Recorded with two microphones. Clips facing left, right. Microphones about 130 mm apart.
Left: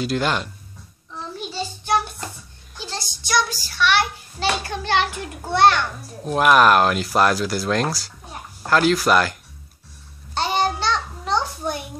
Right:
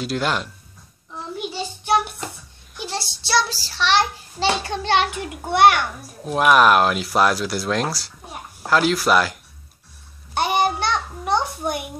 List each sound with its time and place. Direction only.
0.0 s speech: centre (ahead or behind)
1.1 s child singing: 15° right (ahead or behind)
2.8 s a sound: 20° right (ahead or behind)
3.3 s child singing: 30° right (ahead or behind)
4.8 s a child's voice: 20° right (ahead or behind)
6.2 s speech: centre (ahead or behind)
10.3 s a sound: 15° right (ahead or behind)